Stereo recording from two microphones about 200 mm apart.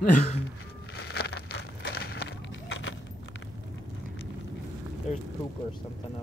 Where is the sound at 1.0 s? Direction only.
55° left (ahead or behind).